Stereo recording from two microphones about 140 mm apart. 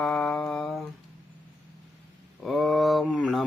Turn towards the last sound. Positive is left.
turn(degrees=0)  # may be behind; listen again after turning